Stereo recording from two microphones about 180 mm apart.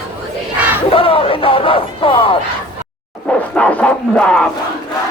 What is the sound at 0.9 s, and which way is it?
Crowd, 30° left (ahead or behind).